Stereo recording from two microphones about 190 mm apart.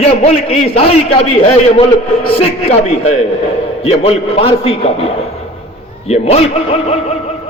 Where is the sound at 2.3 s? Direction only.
35° left (ahead or behind).